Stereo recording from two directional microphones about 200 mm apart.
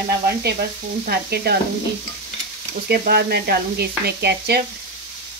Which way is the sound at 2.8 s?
55° right (ahead or behind).